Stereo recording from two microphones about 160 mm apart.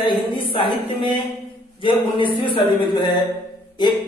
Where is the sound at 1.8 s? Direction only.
30° left (ahead or behind).